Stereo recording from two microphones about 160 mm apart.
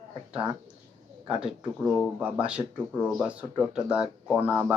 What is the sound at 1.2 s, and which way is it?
Speech, 5° right (ahead or behind).